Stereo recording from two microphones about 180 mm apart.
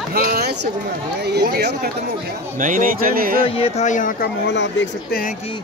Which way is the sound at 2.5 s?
50° right (ahead or behind).